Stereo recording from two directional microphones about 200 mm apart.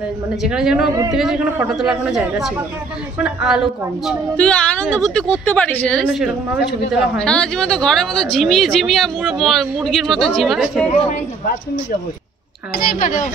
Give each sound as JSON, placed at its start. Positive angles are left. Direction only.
{"t": 0.4, "sound": "a woman's voice", "side_deg": -5}
{"t": 6.0, "sound": "a woman's voice", "side_deg": -5}
{"t": 12.7, "sound": "a woman's voice", "side_deg": 45}